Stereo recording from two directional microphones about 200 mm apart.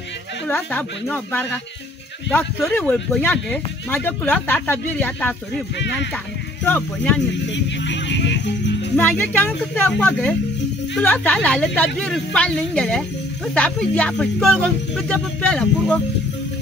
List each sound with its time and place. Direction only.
0.5 s speech: 10° left (ahead or behind)
6.6 s speech: 10° left (ahead or behind)
7.5 s speech: 65° left (ahead or behind)
8.9 s speech: 10° left (ahead or behind)